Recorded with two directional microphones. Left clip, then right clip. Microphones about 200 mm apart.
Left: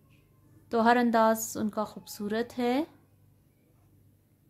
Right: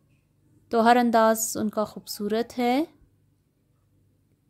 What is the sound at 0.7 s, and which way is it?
Speech, 30° right (ahead or behind).